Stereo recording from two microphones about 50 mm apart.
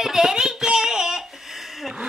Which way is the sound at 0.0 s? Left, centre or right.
Centre.